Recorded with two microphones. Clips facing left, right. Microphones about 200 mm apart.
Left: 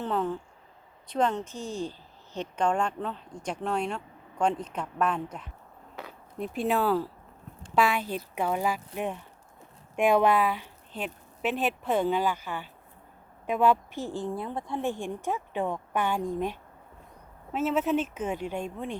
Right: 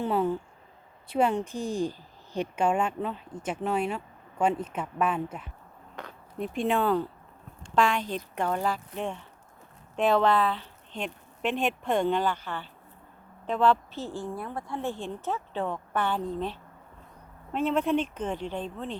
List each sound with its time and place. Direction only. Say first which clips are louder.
0.0 s a woman's voice: right 3 dB; 10° right (ahead or behind); by 18.9 s 10° left (ahead or behind)